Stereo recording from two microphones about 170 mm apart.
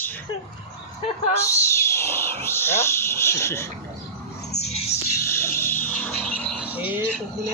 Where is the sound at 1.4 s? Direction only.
15° left (ahead or behind).